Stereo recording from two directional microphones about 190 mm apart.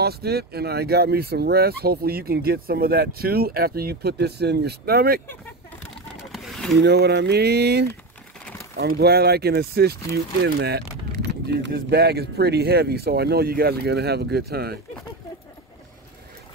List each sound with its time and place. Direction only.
0.0 s speech: 55° right (ahead or behind)
6.3 s a sound: centre (ahead or behind)
6.8 s speech: 60° right (ahead or behind)